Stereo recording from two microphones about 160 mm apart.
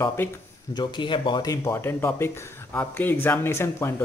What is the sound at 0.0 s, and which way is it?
Speech, 15° left (ahead or behind).